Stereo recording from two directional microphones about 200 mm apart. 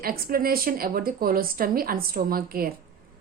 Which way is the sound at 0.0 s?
50° right (ahead or behind).